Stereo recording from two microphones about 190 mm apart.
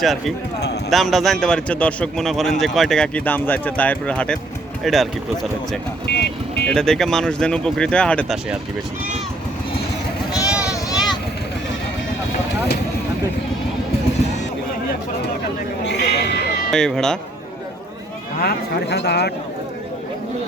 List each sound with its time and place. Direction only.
0.0 s a man's voice: centre (ahead or behind)
6.1 s speech: 60° left (ahead or behind)
6.7 s a man's voice: 5° left (ahead or behind)
10.8 s vehicle: 20° left (ahead or behind)
15.8 s a sound: 65° left (ahead or behind)
16.7 s a man's voice: 5° left (ahead or behind)
18.3 s speech: 60° left (ahead or behind)